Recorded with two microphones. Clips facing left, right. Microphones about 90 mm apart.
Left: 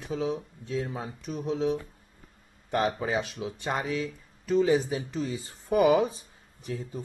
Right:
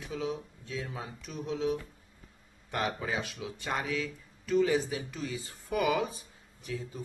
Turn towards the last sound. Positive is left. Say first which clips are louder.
# left 3 dB
turn(degrees=40)  # may be behind; listen again after turning